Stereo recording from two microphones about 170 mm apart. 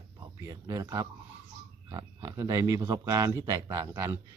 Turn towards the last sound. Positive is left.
turn(degrees=-15)  # may be behind; listen again after turning